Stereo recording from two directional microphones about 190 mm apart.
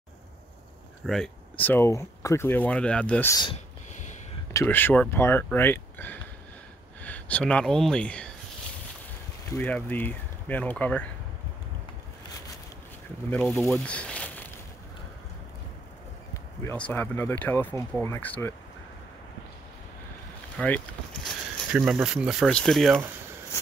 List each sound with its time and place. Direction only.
1.0 s speech: 5° left (ahead or behind)
3.9 s a sound: 40° left (ahead or behind)
4.6 s speech: 10° left (ahead or behind)
9.5 s speech: 10° left (ahead or behind)
13.3 s speech: 5° left (ahead or behind)
16.6 s speech: 10° left (ahead or behind)
20.5 s vehicle: 5° left (ahead or behind)
21.7 s speech: 5° right (ahead or behind)